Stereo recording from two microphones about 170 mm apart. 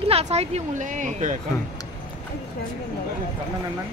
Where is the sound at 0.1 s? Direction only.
40° right (ahead or behind).